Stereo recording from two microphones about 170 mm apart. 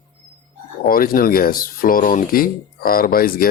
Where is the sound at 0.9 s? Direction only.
55° left (ahead or behind).